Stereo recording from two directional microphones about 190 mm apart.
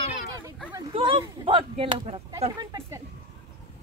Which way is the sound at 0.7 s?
25° right (ahead or behind).